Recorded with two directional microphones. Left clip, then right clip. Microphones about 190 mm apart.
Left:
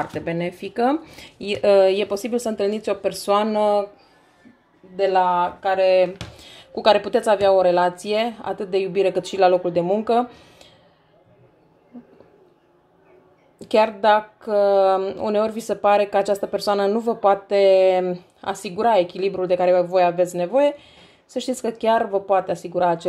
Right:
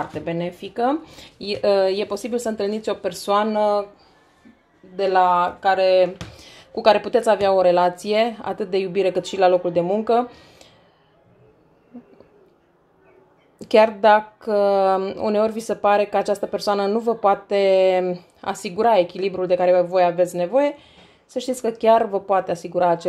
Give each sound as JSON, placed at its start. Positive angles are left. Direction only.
{"t": 0.0, "sound": "speech", "side_deg": 10}
{"t": 4.9, "sound": "speech", "side_deg": -15}
{"t": 13.6, "sound": "speech", "side_deg": -10}